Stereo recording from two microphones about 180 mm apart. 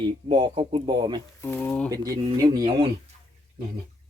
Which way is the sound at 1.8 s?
20° right (ahead or behind).